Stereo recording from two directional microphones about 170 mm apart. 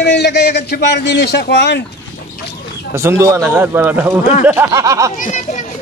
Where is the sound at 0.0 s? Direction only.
85° left.